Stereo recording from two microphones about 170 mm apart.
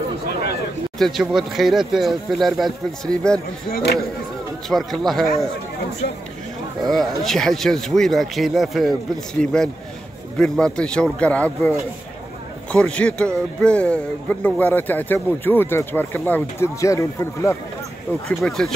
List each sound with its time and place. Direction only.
0.9 s speech: centre (ahead or behind)
3.7 s speech: 70° left (ahead or behind)
4.6 s speech: centre (ahead or behind)
6.9 s speech: centre (ahead or behind)
12.7 s speech: 5° left (ahead or behind)
18.6 s speech: 5° left (ahead or behind)